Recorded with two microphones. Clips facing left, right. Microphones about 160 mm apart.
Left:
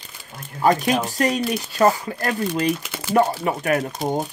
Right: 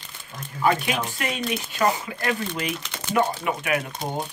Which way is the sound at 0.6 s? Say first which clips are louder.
Left 4 dB; 40° left (ahead or behind).